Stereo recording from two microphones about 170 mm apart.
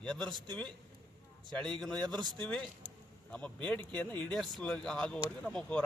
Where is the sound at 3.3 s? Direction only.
5° left (ahead or behind).